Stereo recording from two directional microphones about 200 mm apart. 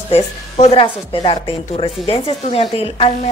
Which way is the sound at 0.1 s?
30° left (ahead or behind).